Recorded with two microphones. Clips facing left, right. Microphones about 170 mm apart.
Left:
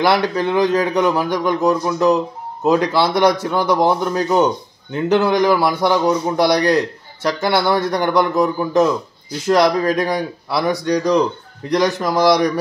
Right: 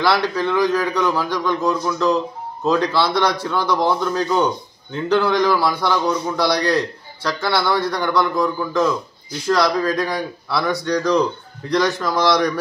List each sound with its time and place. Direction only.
0.0 s a man's voice: 15° left (ahead or behind)